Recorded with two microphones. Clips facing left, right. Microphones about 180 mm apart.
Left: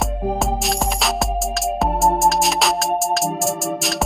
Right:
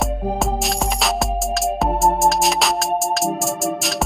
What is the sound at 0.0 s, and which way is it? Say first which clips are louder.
Music: even; centre (ahead or behind).